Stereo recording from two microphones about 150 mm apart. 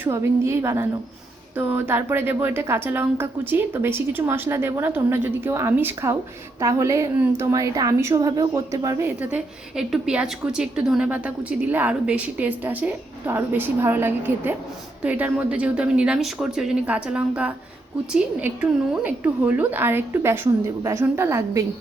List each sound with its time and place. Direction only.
0.0 s a woman's voice: 20° right (ahead or behind)